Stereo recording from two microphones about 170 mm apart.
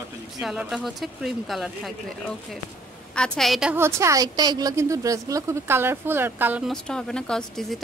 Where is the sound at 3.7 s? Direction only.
15° right (ahead or behind).